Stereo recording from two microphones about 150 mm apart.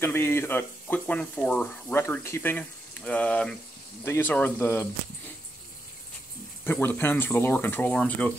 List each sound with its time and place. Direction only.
0.0 s speech: 15° left (ahead or behind)
6.6 s speech: 15° left (ahead or behind)